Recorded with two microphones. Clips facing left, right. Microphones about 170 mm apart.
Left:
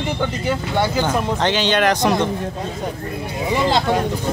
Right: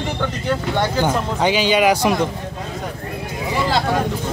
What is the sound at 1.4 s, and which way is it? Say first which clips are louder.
Speech: right 4 dB; 10° right (ahead or behind).